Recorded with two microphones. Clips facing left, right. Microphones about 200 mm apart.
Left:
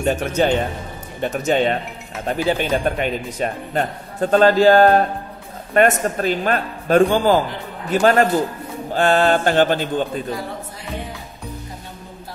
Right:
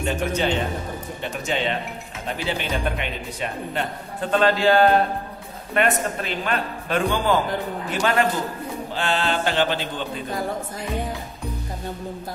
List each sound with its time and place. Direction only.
0.0 s speech: 45° left (ahead or behind)